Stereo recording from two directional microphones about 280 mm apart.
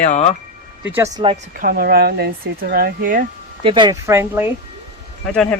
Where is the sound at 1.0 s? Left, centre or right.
Centre.